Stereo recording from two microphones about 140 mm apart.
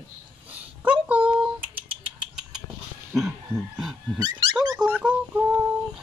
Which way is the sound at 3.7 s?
Centre (ahead or behind).